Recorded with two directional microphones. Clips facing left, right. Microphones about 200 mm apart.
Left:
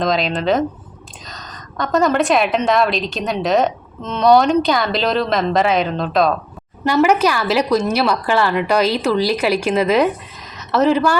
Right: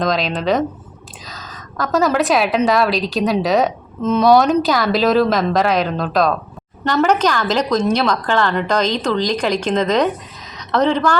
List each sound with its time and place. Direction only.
0.0 s a woman's voice: centre (ahead or behind)